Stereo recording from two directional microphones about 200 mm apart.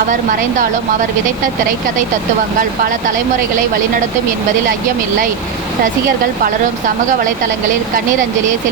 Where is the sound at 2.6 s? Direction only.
40° right (ahead or behind).